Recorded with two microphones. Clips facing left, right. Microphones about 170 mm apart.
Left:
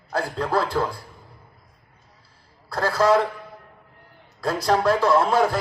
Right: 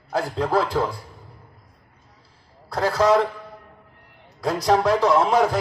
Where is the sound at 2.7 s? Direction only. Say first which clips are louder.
Right 1 dB; 20° right (ahead or behind).